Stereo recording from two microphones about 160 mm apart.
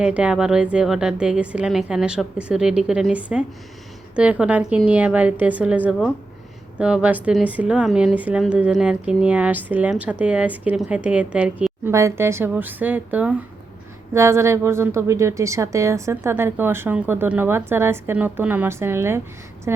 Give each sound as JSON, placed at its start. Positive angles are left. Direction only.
{"t": 0.0, "sound": "a woman's voice", "side_deg": -5}